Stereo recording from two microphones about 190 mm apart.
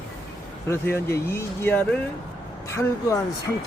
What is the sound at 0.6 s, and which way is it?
Speech, 15° left (ahead or behind).